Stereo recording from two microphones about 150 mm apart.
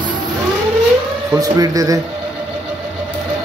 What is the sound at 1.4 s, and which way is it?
Speech, 25° right (ahead or behind).